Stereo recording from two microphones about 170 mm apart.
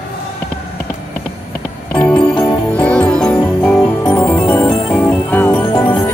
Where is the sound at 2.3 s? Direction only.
25° left (ahead or behind).